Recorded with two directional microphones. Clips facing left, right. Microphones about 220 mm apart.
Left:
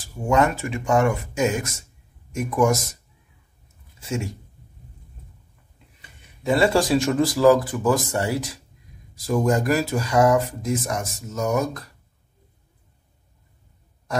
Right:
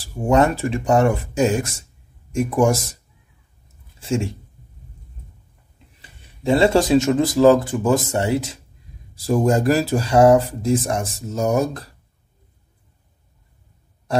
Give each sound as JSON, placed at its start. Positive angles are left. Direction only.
{"t": 0.0, "sound": "speech", "side_deg": -35}
{"t": 4.0, "sound": "speech", "side_deg": -30}
{"t": 5.9, "sound": "speech", "side_deg": -25}